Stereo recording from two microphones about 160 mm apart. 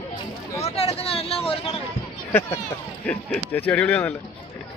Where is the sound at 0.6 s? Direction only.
40° left (ahead or behind).